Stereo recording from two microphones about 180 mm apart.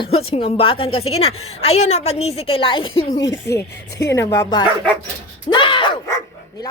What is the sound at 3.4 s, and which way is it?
A woman's voice, 15° left (ahead or behind).